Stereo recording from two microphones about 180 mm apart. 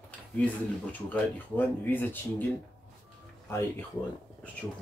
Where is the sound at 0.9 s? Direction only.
10° left (ahead or behind).